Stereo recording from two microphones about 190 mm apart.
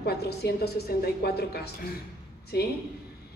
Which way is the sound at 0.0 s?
55° left (ahead or behind).